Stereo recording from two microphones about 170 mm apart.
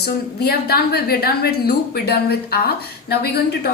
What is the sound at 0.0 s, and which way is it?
A woman's voice, 70° left (ahead or behind).